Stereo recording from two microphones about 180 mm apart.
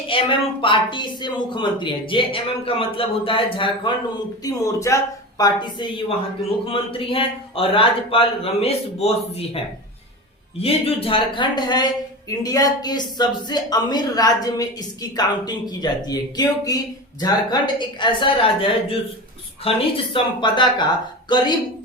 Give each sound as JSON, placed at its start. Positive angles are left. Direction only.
{"t": 0.1, "sound": "speech", "side_deg": 30}
{"t": 4.4, "sound": "a man's voice", "side_deg": 15}
{"t": 10.6, "sound": "speech", "side_deg": 30}